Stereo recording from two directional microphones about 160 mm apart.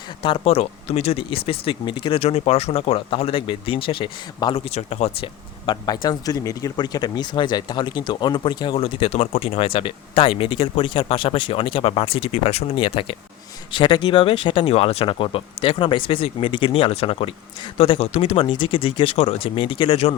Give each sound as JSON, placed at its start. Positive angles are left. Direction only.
{"t": 0.2, "sound": "speech", "side_deg": 35}
{"t": 4.5, "sound": "speech", "side_deg": 40}